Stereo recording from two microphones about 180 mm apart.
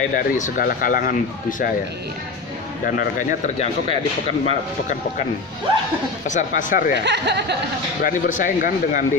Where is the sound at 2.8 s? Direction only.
50° left (ahead or behind).